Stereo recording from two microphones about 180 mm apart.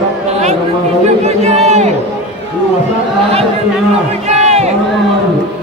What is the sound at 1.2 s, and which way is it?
Crowd, 35° right (ahead or behind).